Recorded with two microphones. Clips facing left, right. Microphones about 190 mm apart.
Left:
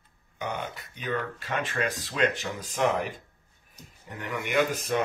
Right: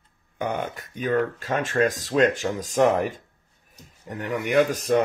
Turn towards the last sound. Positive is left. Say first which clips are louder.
# right 6 dB
turn(degrees=-40)  # may be behind; listen again after turning